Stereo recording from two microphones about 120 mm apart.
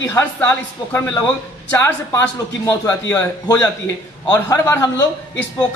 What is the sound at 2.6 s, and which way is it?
Speech, 25° left (ahead or behind).